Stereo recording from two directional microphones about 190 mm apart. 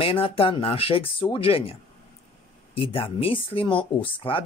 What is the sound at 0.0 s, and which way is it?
Speech, 30° left (ahead or behind).